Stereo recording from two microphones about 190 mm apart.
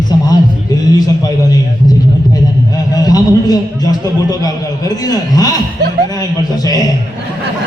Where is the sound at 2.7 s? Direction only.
20° left (ahead or behind).